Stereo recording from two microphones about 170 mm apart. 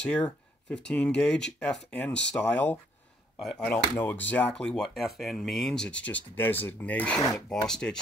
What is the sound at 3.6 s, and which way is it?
Speech, 10° left (ahead or behind).